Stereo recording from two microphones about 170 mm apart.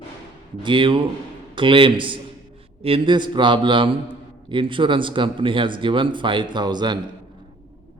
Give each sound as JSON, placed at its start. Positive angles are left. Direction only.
{"t": 0.6, "sound": "speech", "side_deg": -30}